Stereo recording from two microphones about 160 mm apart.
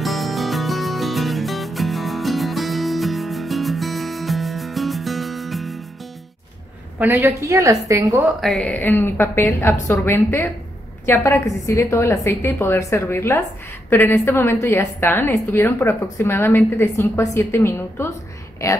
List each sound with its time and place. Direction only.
0.0 s music: centre (ahead or behind)
7.0 s a woman's voice: 15° right (ahead or behind)
8.2 s a woman's voice: centre (ahead or behind); by 18.7 s 20° left (ahead or behind)